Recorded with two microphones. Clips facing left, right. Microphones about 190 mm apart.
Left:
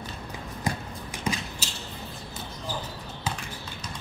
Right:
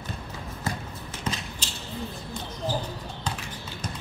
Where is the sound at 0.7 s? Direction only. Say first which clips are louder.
Left 2 dB; 15° left (ahead or behind).